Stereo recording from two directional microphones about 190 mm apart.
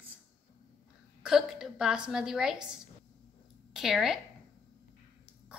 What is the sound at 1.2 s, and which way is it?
A woman's voice, centre (ahead or behind).